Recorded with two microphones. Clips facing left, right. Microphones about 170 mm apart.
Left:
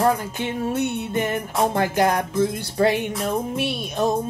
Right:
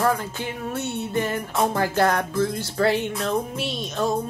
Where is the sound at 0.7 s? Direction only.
15° left (ahead or behind).